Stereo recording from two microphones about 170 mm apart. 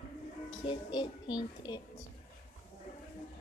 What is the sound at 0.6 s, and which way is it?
Speech, 30° left (ahead or behind).